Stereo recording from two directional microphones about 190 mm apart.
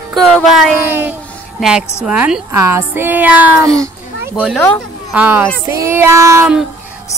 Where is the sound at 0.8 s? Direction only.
10° right (ahead or behind).